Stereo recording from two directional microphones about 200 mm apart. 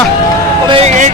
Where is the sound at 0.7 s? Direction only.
35° right (ahead or behind).